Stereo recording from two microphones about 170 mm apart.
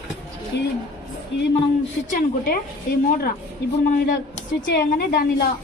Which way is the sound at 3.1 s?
55° left (ahead or behind).